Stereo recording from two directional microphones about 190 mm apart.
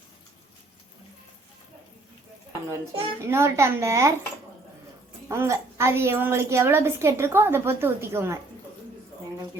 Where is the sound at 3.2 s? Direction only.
15° right (ahead or behind).